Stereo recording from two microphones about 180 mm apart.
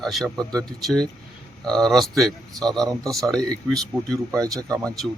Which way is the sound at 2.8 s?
20° right (ahead or behind).